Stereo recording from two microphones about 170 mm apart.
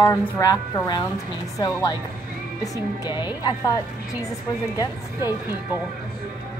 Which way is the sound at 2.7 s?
25° left (ahead or behind).